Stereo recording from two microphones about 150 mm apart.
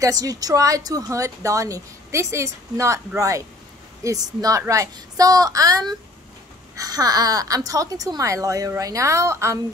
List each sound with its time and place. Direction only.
0.0 s speech: 25° right (ahead or behind)